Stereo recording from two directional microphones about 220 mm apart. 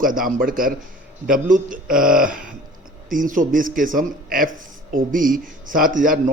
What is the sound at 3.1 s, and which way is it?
A man's voice, 35° right (ahead or behind).